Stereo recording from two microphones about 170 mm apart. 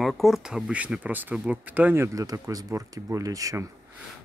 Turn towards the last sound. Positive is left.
turn(degrees=-20)  # may be behind; listen again after turning